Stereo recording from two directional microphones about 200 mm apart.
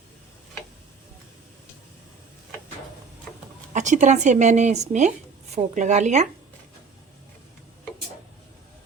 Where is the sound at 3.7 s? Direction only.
35° right (ahead or behind).